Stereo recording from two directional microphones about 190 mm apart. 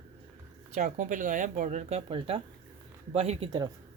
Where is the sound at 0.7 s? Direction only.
40° right (ahead or behind).